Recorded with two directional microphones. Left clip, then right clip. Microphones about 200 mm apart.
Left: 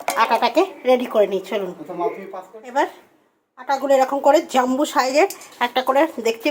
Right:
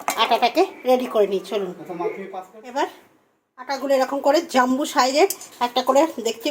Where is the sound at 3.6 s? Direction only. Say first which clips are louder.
Left 4 dB; 10° left (ahead or behind).